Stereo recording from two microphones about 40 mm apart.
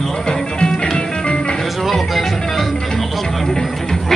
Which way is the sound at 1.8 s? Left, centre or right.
Centre.